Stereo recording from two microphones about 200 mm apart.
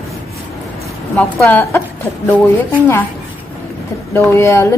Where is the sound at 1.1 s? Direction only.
10° left (ahead or behind).